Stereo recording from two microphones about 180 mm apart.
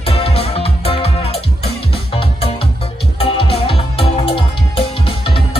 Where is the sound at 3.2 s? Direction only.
35° left (ahead or behind).